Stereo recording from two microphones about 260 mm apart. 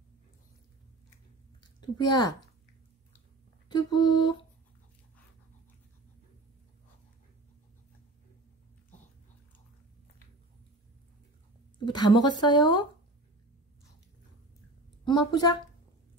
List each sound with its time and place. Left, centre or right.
1.8 s speech: centre
3.6 s speech: centre
11.8 s speech: centre
15.0 s speech: centre